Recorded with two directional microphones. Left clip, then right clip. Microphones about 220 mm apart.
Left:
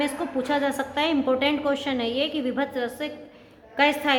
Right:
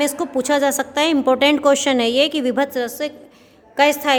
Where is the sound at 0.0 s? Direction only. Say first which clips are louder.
Right 6 dB; 50° right (ahead or behind).